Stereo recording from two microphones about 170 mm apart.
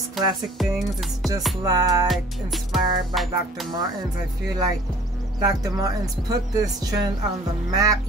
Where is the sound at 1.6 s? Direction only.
20° right (ahead or behind).